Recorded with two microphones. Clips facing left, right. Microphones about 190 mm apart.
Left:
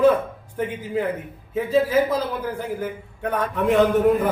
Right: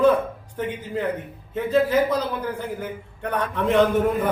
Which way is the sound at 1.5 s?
5° left (ahead or behind).